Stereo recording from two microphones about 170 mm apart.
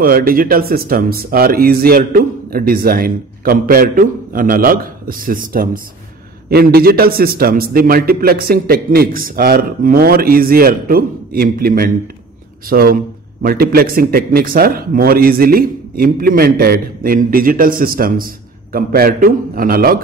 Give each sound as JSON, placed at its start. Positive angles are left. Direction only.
{"t": 0.0, "sound": "a man's voice", "side_deg": -60}